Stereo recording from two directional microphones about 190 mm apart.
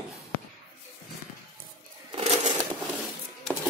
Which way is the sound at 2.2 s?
35° right (ahead or behind).